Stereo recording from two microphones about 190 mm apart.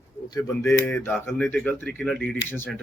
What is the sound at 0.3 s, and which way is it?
Speech, 20° left (ahead or behind).